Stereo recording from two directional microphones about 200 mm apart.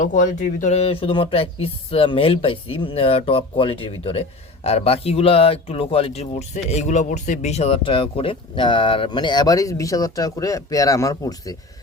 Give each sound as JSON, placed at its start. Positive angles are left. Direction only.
{"t": 0.0, "sound": "speech", "side_deg": 40}